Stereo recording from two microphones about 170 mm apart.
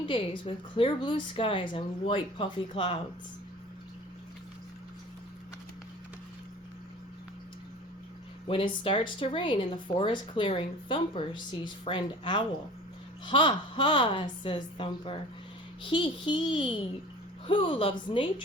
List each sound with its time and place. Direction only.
0.0 s speech: 30° left (ahead or behind)
8.4 s speech: 30° left (ahead or behind)